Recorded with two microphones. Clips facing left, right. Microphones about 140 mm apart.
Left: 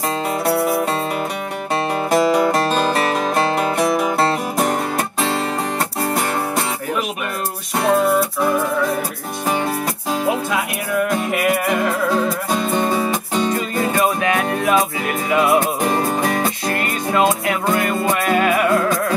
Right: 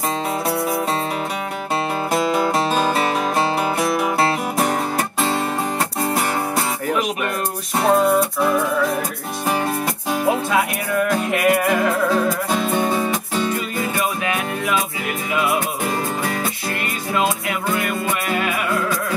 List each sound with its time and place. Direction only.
2.0 s music: centre (ahead or behind)
11.1 s music: centre (ahead or behind)
13.3 s music: 30° left (ahead or behind)
13.7 s music: 45° left (ahead or behind)
14.0 s music: 25° left (ahead or behind)
15.8 s music: 45° left (ahead or behind)
17.8 s music: 30° left (ahead or behind)
18.2 s music: 45° left (ahead or behind)